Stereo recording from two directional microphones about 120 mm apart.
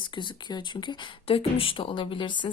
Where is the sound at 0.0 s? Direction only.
40° left (ahead or behind).